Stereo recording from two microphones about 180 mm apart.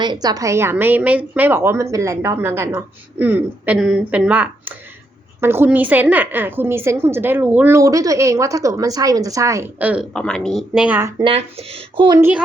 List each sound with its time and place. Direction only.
0.0 s a woman's voice: 25° right (ahead or behind); by 10.1 s 10° right (ahead or behind)
10.2 s a woman's voice: 5° left (ahead or behind)
11.2 s speech: 30° right (ahead or behind)